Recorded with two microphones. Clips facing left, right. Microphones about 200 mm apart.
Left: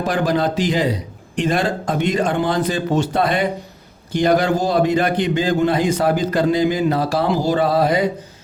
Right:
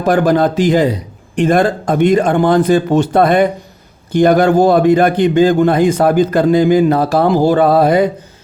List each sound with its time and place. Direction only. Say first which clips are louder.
0.0 s a man's voice: right 7 dB; 50° right (ahead or behind)